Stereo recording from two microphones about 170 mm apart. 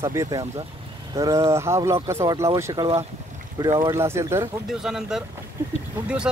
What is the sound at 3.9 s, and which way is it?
Speech, 15° right (ahead or behind).